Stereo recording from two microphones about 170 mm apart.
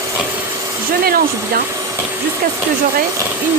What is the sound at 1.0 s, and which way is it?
Speech, 60° right (ahead or behind).